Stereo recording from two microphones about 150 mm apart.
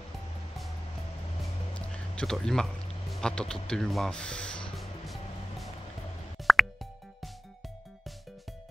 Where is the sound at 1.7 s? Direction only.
5° left (ahead or behind).